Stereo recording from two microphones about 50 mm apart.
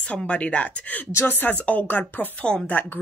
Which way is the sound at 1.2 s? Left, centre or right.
Left.